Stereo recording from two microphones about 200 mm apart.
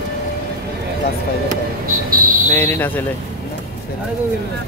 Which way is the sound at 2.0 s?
45° right (ahead or behind).